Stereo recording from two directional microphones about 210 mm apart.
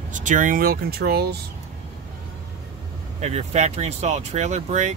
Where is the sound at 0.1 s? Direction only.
35° right (ahead or behind).